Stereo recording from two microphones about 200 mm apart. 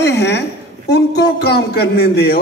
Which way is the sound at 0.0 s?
60° left (ahead or behind).